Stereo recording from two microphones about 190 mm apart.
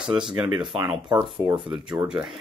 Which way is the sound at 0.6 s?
25° right (ahead or behind).